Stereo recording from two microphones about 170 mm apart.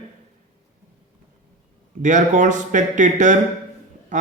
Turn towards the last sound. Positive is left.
turn(degrees=-45)  # may be behind; listen again after turning